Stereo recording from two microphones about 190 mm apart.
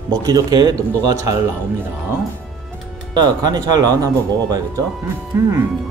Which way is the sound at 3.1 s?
20° right (ahead or behind).